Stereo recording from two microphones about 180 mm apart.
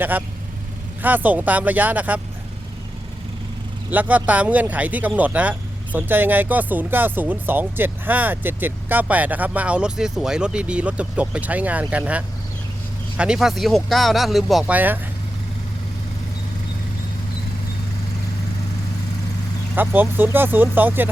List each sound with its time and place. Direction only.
0.0 s speech: 10° right (ahead or behind)
3.9 s speech: 10° right (ahead or behind)
19.7 s speech: 10° right (ahead or behind)